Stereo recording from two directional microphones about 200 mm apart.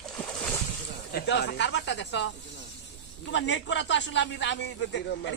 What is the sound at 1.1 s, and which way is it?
Speech, 60° left (ahead or behind).